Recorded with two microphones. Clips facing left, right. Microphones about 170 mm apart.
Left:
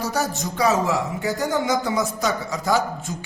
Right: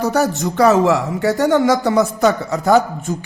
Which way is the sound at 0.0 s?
60° right (ahead or behind).